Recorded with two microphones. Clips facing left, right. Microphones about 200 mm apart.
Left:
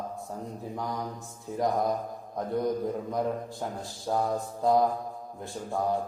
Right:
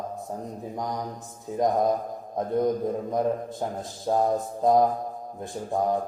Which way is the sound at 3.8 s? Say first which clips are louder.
Right 5 dB; 20° right (ahead or behind).